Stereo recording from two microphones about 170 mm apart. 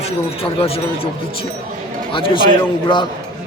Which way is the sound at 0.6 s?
35° left (ahead or behind).